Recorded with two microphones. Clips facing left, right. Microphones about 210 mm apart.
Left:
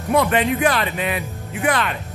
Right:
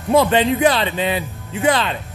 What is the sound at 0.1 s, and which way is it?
Speech, 30° right (ahead or behind).